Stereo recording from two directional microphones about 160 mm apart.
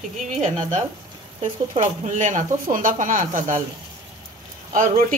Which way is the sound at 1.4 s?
50° right (ahead or behind).